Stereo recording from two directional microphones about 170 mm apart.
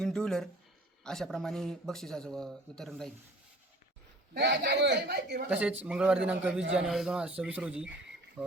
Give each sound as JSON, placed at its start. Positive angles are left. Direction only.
{"t": 0.0, "sound": "a man's voice", "side_deg": 5}
{"t": 4.4, "sound": "a man's voice", "side_deg": -90}
{"t": 5.5, "sound": "a man's voice", "side_deg": -10}
{"t": 8.4, "sound": "croak", "side_deg": -10}